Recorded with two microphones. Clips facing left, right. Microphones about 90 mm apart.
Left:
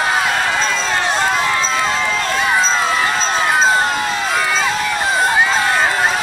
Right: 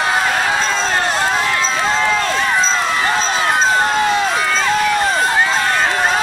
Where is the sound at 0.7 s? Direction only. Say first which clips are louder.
Right 1 dB; 40° right (ahead or behind).